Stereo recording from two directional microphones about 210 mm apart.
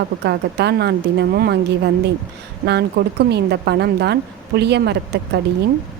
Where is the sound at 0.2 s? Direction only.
55° right (ahead or behind).